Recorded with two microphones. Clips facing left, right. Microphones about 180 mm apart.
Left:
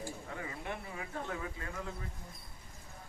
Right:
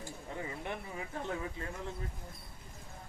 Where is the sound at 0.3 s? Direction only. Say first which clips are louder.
Right 4 dB; 25° right (ahead or behind).